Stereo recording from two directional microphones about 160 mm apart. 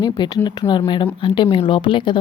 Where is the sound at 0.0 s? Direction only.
30° left (ahead or behind).